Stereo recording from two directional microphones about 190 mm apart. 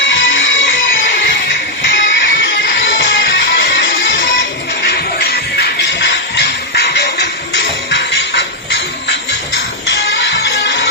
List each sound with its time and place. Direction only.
0.1 s music: 80° left
4.8 s music: 60° left (ahead or behind)
9.9 s music: 70° left (ahead or behind)